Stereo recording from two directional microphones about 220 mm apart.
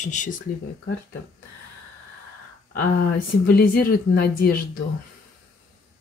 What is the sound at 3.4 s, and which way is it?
A woman's voice, 40° left (ahead or behind).